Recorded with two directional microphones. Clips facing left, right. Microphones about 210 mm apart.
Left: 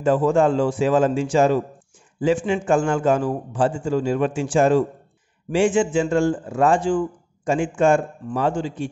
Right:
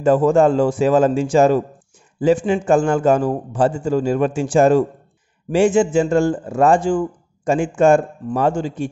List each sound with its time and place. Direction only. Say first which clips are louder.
0.0 s a man's voice: right 4 dB; 45° right (ahead or behind)